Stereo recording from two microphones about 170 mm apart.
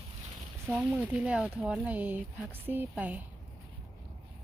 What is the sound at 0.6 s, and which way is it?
Speech, 5° right (ahead or behind).